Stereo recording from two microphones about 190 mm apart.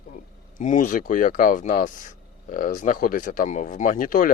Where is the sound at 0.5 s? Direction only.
40° left (ahead or behind).